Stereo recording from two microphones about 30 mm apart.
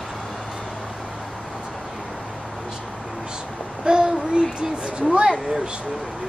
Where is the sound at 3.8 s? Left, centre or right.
Right.